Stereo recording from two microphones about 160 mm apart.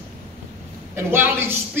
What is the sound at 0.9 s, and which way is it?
Speech, 15° right (ahead or behind).